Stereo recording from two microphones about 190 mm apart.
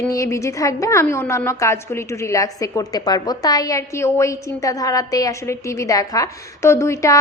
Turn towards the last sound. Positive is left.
turn(degrees=15)  # may be behind; listen again after turning